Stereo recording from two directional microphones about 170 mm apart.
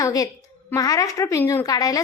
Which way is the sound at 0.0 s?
20° left (ahead or behind).